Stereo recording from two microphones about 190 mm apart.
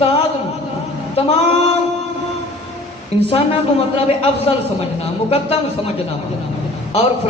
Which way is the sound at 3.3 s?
30° left (ahead or behind).